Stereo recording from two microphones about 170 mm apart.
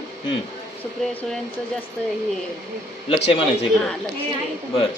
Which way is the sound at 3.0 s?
35° left (ahead or behind).